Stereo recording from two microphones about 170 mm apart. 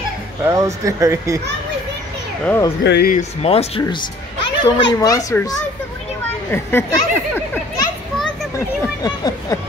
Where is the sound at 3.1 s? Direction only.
40° left (ahead or behind).